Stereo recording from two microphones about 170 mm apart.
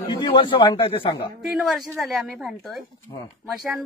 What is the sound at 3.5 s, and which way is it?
Speech, 5° right (ahead or behind).